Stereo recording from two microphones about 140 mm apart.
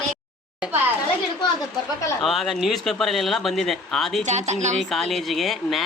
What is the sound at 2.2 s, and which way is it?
Speech, centre (ahead or behind).